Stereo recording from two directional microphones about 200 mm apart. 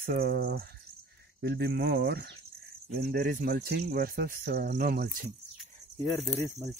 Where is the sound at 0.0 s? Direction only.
50° right (ahead or behind).